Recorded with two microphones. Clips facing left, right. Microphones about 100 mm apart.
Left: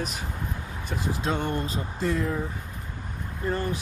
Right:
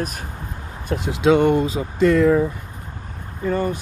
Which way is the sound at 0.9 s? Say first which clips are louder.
Right 12 dB; 80° right.